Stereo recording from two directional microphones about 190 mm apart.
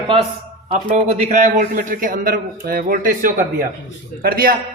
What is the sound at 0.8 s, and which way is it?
A man's voice, 35° right (ahead or behind).